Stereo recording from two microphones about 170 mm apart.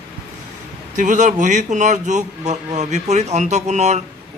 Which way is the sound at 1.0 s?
45° right (ahead or behind).